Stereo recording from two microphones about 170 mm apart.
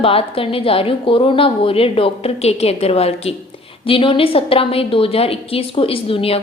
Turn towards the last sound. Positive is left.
turn(degrees=35)  # may be behind; listen again after turning